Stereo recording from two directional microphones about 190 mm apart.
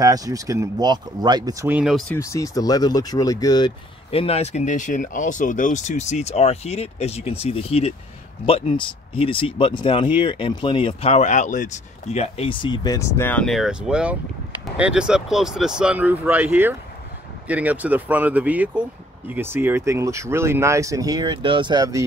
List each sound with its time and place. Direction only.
0.0 s speech: 20° right (ahead or behind); by 2.1 s centre (ahead or behind)
2.1 s speech: 15° left (ahead or behind); by 22.0 s 20° right (ahead or behind)